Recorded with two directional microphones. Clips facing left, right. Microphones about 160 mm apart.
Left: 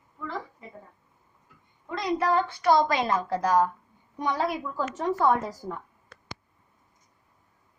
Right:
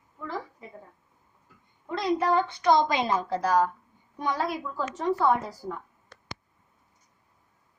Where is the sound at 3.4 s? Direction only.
15° left (ahead or behind).